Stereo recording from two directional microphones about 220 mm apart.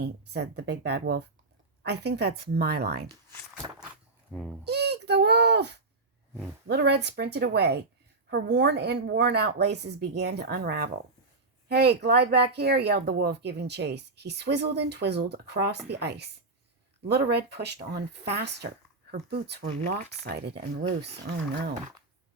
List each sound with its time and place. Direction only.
0.0 s speech: 50° right (ahead or behind)
4.3 s speech: centre (ahead or behind)
4.6 s a sound: 50° right (ahead or behind)
6.7 s speech: 50° right (ahead or behind)